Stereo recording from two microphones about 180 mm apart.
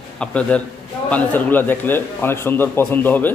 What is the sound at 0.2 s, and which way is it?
A man's voice, 5° left (ahead or behind).